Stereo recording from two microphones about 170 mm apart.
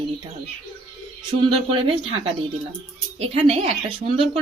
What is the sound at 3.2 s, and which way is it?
A woman's voice, 35° right (ahead or behind).